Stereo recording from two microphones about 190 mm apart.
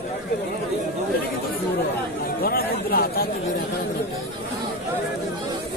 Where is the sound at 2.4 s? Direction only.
50° left (ahead or behind).